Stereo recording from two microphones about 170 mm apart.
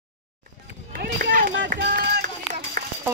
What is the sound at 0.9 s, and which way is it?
Run, 70° right (ahead or behind).